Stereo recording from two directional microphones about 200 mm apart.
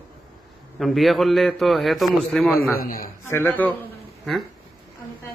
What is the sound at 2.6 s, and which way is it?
Speech, 45° left (ahead or behind).